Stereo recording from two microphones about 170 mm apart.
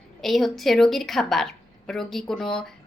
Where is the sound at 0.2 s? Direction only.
Centre (ahead or behind).